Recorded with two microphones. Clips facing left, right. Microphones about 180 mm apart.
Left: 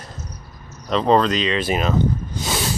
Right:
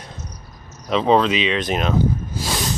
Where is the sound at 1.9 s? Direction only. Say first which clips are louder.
Right 1 dB; centre (ahead or behind).